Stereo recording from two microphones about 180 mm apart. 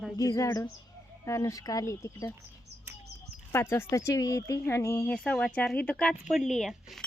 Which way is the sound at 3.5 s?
15° left (ahead or behind).